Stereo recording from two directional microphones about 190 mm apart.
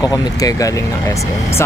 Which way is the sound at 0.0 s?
20° left (ahead or behind).